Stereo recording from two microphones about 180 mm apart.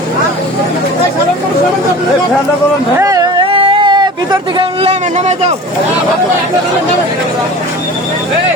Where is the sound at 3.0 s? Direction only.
20° right (ahead or behind); by 5.5 s 35° right (ahead or behind).